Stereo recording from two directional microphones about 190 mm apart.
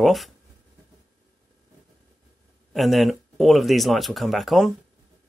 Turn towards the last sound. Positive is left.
turn(degrees=0)  # may be behind; listen again after turning